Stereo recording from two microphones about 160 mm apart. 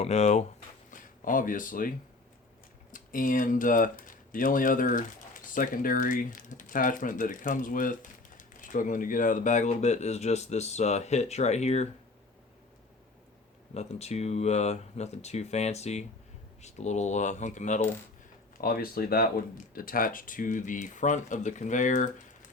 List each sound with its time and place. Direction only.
0.0 s speech: 45° left (ahead or behind)
0.9 s speech: 55° left (ahead or behind)
2.9 s speech: 55° left (ahead or behind)
13.7 s speech: 40° left (ahead or behind)
18.5 s speech: 65° left (ahead or behind)